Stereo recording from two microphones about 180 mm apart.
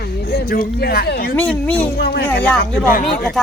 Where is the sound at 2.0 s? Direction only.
65° left (ahead or behind).